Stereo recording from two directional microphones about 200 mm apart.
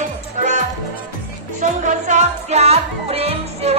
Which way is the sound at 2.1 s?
35° right (ahead or behind).